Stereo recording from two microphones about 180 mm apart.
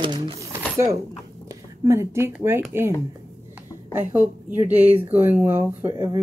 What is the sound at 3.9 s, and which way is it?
A woman's voice, 10° right (ahead or behind).